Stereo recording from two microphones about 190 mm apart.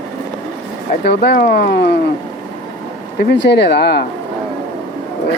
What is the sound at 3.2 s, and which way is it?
Speech, 65° left (ahead or behind).